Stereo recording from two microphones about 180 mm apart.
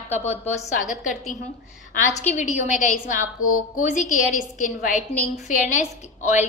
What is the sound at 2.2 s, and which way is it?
A woman's voice, 40° left (ahead or behind).